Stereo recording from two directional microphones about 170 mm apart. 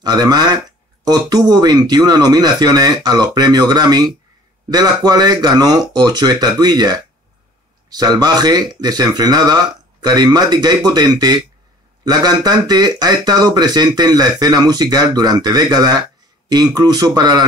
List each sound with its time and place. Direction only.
0.0 s speech: 25° right (ahead or behind)